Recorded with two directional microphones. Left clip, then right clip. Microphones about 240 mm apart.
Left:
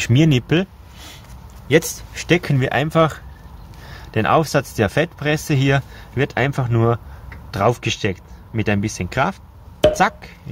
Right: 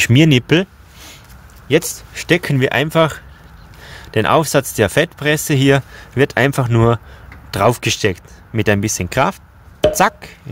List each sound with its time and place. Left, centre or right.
0.0 s speech: right
1.7 s speech: right